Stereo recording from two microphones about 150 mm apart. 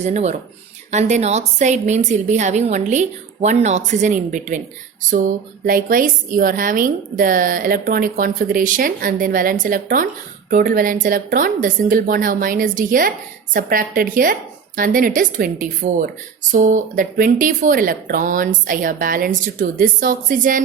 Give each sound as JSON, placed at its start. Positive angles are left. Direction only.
{"t": 0.0, "sound": "a woman's voice", "side_deg": -50}